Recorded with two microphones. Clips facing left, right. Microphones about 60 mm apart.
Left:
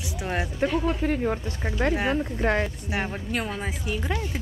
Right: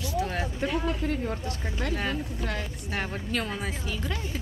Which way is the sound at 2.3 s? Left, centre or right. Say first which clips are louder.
Left 9 dB; left.